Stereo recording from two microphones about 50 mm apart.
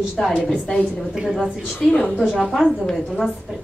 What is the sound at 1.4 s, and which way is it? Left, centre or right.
Speech, centre.